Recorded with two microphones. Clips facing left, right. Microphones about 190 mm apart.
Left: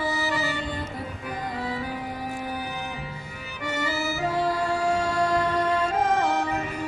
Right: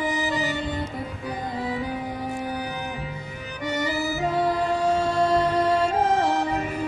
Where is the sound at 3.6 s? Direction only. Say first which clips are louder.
Right 2 dB; 15° right (ahead or behind).